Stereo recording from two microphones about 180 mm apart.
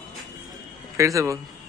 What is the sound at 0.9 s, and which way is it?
Speech, 15° right (ahead or behind).